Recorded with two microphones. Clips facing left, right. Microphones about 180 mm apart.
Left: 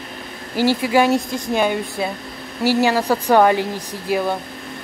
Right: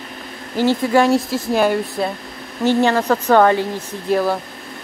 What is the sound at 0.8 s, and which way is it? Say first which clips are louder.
A woman's voice: right 1 dB; 5° left (ahead or behind).